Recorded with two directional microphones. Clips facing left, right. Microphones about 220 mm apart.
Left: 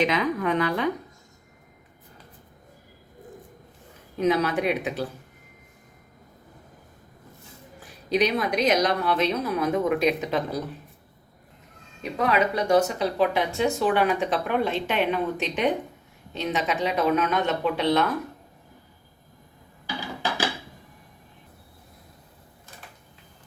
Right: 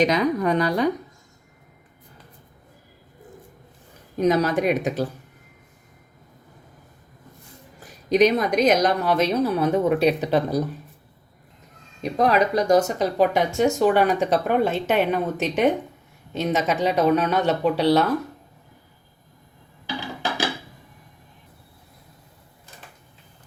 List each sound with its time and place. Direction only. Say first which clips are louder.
0.0 s speech: right 4 dB; 40° right (ahead or behind)
4.2 s speech: right 3 dB; 40° right (ahead or behind)
7.9 s speech: right 6 dB; 45° right (ahead or behind)
12.0 s speech: right 4 dB; 40° right (ahead or behind)